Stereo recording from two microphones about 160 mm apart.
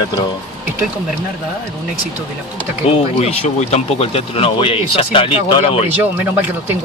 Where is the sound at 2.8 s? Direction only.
40° left (ahead or behind).